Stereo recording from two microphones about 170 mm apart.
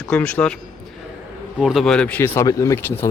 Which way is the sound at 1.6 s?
Centre (ahead or behind).